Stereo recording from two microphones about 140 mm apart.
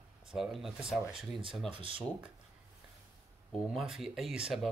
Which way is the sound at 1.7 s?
40° right (ahead or behind).